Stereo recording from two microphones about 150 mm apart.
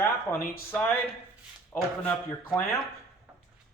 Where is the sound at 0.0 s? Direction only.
15° left (ahead or behind).